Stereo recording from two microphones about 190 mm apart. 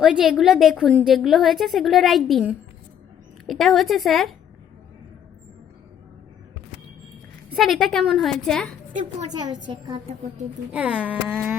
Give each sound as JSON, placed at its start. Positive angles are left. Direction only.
{"t": 0.0, "sound": "a woman's voice", "side_deg": 0}
{"t": 7.5, "sound": "a woman's voice", "side_deg": 0}
{"t": 9.3, "sound": "a woman's voice", "side_deg": -20}
{"t": 10.7, "sound": "a sound", "side_deg": -5}